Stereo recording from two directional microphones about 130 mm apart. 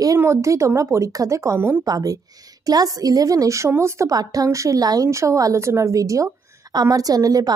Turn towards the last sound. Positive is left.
turn(degrees=-25)  # may be behind; listen again after turning